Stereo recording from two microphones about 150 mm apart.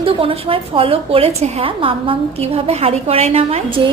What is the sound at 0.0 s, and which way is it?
A woman's voice, 40° right (ahead or behind).